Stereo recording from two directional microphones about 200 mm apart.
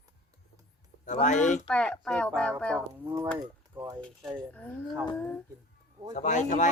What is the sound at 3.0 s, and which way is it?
Speech, 15° right (ahead or behind).